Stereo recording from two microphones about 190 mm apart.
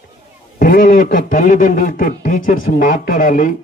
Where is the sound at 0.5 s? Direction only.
50° left (ahead or behind).